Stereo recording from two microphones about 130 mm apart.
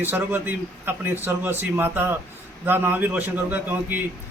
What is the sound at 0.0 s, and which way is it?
A man's voice, 15° right (ahead or behind).